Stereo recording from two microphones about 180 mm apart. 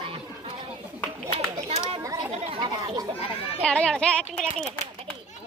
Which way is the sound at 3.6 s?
5° left (ahead or behind).